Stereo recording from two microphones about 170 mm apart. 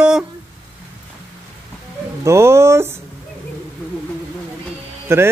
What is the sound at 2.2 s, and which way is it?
Speech, 15° right (ahead or behind).